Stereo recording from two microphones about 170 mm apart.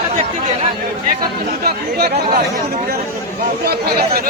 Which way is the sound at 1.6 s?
65° right (ahead or behind).